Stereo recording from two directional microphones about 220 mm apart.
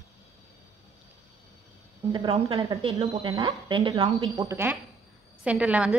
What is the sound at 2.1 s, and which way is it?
A woman's voice, 25° right (ahead or behind).